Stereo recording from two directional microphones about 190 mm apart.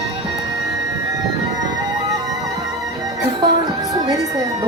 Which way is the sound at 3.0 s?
20° right (ahead or behind).